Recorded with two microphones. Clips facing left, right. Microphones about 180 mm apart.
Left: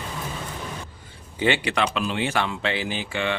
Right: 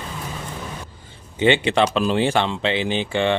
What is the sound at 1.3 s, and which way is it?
A man's voice, 20° right (ahead or behind).